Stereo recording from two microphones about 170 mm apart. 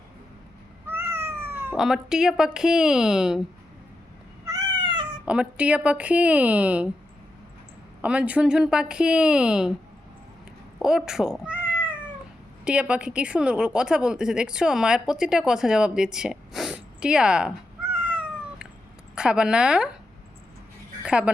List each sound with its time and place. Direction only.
0.9 s cat: 15° right (ahead or behind)
1.8 s a woman's voice: 5° right (ahead or behind)
4.4 s cat: 20° right (ahead or behind)
5.2 s speech: 5° right (ahead or behind)
8.0 s a woman's voice: 5° right (ahead or behind)
10.8 s cat: 5° right (ahead or behind)
12.6 s a woman's voice: 5° right (ahead or behind)
17.9 s cat: 10° right (ahead or behind)
19.1 s a woman's voice: 5° right (ahead or behind)
21.0 s speech: 5° right (ahead or behind)